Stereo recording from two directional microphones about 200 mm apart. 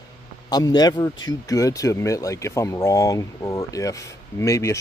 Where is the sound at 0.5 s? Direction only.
20° left (ahead or behind).